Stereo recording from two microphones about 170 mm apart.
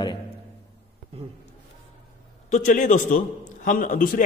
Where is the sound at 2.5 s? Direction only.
50° left (ahead or behind).